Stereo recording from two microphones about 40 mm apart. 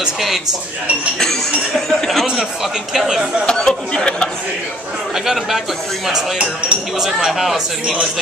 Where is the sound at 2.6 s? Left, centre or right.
Centre.